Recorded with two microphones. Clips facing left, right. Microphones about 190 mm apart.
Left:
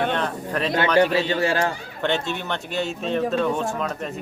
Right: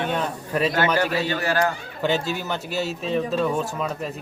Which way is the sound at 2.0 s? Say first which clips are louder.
Right 1 dB; 5° right (ahead or behind).